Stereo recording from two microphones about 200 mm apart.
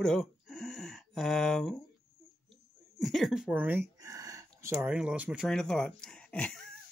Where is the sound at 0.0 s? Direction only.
Centre (ahead or behind).